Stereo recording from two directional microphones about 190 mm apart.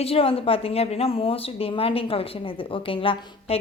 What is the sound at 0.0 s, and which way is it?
Speech, 30° left (ahead or behind).